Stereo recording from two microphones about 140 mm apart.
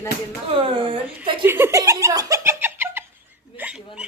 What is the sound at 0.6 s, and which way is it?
Speech, 40° right (ahead or behind).